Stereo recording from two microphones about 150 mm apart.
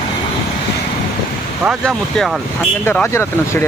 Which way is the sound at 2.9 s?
15° left (ahead or behind).